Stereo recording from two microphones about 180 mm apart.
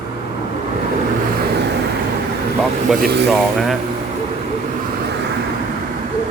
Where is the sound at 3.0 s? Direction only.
70° right (ahead or behind).